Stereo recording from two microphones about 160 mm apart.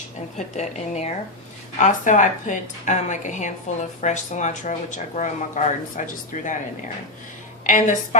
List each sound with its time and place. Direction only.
0.3 s a woman's voice: 45° left (ahead or behind)
7.7 s a woman's voice: 55° left (ahead or behind)